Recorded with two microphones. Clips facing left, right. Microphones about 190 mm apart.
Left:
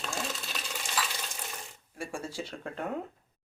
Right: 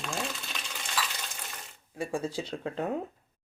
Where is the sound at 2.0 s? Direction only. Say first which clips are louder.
Right 5 dB; 20° right (ahead or behind).